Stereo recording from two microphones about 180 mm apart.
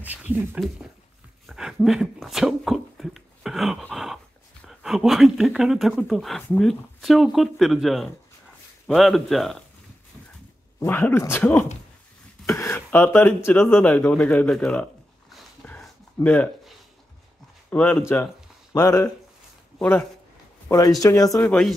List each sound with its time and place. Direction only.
0.0 s speech: 10° right (ahead or behind)
1.5 s a sound: centre (ahead or behind)
4.6 s speech: centre (ahead or behind)
10.8 s speech: 15° left (ahead or behind)
12.4 s a sound: 15° left (ahead or behind)
13.5 s speech: 10° left (ahead or behind)
15.3 s a sound: 5° left (ahead or behind)
17.6 s speech: 10° left (ahead or behind)
21.5 s speech: centre (ahead or behind)